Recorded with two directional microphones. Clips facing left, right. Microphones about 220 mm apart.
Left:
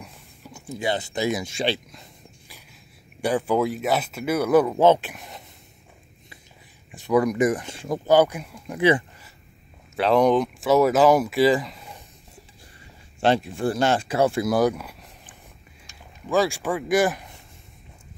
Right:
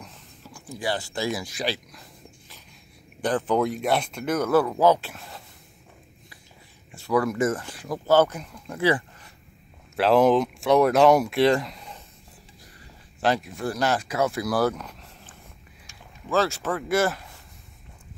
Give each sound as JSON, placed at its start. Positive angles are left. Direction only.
{"t": 0.0, "sound": "a sound", "side_deg": 20}
{"t": 0.7, "sound": "speech", "side_deg": 20}
{"t": 3.2, "sound": "speech", "side_deg": 10}
{"t": 6.9, "sound": "speech", "side_deg": 20}
{"t": 8.1, "sound": "speech", "side_deg": 15}
{"t": 9.9, "sound": "speech", "side_deg": 0}
{"t": 13.2, "sound": "speech", "side_deg": 30}